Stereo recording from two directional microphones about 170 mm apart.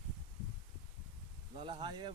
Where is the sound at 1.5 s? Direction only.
30° right (ahead or behind).